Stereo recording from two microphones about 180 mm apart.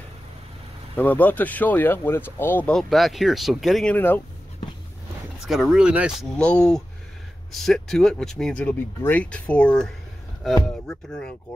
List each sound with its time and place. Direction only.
0.9 s speech: 10° left (ahead or behind)
5.4 s speech: centre (ahead or behind)